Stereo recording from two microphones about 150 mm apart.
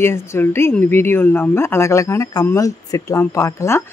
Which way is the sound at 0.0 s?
15° left (ahead or behind).